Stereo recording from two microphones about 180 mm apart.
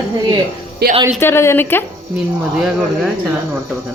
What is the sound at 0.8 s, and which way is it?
Speech, 65° right (ahead or behind).